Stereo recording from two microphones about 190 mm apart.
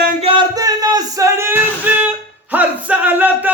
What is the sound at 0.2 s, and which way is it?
Music, 25° right (ahead or behind).